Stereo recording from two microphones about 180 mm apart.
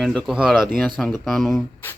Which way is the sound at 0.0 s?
Centre (ahead or behind).